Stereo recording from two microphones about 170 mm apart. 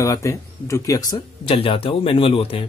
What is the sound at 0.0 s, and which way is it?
Speech, 15° left (ahead or behind).